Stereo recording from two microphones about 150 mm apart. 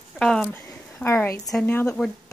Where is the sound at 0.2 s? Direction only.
5° left (ahead or behind).